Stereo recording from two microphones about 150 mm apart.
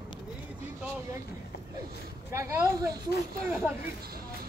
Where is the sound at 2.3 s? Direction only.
20° right (ahead or behind).